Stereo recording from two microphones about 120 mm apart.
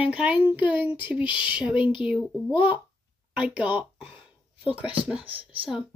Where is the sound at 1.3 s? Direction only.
45° left (ahead or behind).